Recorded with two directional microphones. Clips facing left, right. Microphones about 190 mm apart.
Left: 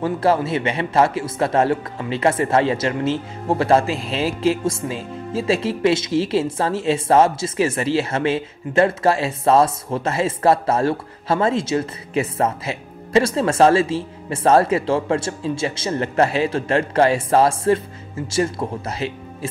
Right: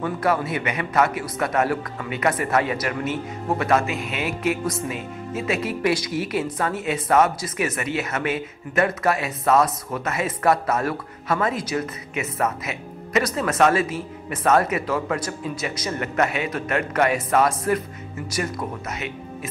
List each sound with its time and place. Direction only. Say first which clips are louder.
0.0 s a man's voice: left 4 dB; 30° left (ahead or behind)